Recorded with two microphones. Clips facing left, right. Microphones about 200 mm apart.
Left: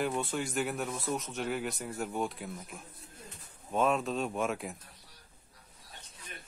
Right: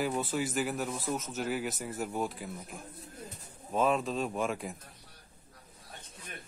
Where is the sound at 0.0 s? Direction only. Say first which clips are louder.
Right 1 dB; 5° right (ahead or behind).